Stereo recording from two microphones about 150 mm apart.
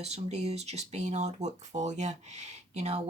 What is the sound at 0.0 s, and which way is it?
Speech, 45° right (ahead or behind).